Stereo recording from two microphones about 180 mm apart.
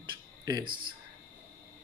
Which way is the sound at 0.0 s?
25° right (ahead or behind).